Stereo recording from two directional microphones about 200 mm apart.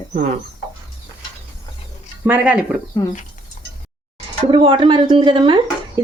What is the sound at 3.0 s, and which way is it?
Speech, 20° left (ahead or behind).